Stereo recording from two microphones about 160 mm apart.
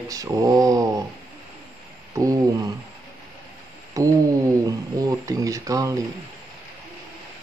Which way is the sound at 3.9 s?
20° right (ahead or behind).